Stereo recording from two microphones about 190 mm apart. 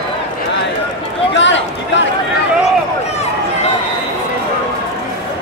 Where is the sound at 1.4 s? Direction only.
70° left (ahead or behind).